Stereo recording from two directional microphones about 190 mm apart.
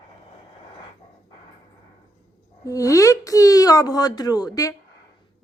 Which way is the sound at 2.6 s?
15° left (ahead or behind).